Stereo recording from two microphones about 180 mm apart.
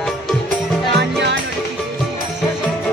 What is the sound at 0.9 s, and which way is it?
Music, 75° right (ahead or behind).